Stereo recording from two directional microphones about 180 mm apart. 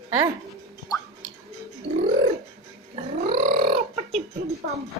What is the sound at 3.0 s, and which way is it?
Gargling, 40° right (ahead or behind).